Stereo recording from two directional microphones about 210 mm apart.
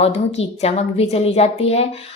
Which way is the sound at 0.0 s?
30° left (ahead or behind).